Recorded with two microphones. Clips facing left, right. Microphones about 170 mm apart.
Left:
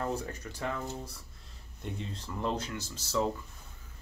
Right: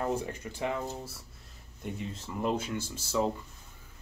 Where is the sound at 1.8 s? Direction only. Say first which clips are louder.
Right 2 dB; 5° right (ahead or behind).